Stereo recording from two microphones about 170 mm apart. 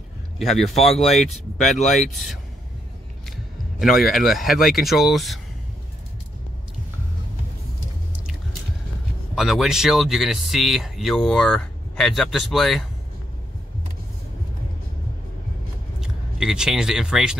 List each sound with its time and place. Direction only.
0.4 s speech: centre (ahead or behind)
1.7 s speech: 45° left (ahead or behind)
2.0 s speech: centre (ahead or behind)
3.8 s speech: centre (ahead or behind)
9.3 s speech: centre (ahead or behind)
16.0 s speech: 5° right (ahead or behind)